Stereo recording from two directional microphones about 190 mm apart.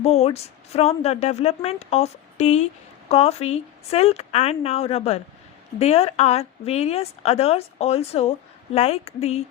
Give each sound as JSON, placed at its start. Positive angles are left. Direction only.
{"t": 0.0, "sound": "a woman's voice", "side_deg": 35}